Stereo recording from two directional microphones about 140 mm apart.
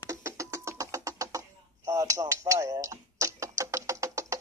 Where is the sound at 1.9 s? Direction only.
25° right (ahead or behind).